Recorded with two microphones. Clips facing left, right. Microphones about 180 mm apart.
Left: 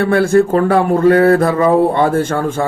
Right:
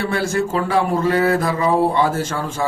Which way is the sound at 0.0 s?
55° left (ahead or behind).